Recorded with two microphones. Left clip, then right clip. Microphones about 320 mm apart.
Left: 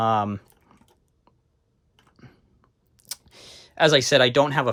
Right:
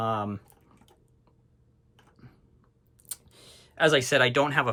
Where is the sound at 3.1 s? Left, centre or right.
Centre.